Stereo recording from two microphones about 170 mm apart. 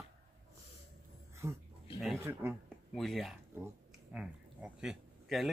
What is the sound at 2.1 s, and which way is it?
Speech, 15° right (ahead or behind).